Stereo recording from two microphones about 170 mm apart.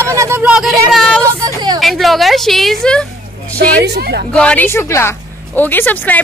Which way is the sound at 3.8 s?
75° right (ahead or behind).